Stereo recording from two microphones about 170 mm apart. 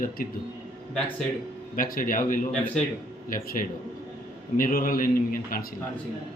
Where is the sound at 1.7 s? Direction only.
55° left (ahead or behind).